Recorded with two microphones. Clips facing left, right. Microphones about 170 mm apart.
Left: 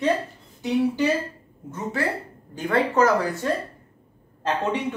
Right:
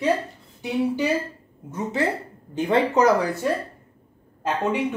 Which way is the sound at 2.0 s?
20° right (ahead or behind).